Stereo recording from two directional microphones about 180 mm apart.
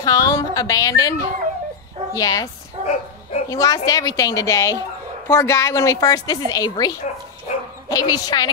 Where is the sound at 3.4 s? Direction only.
20° left (ahead or behind).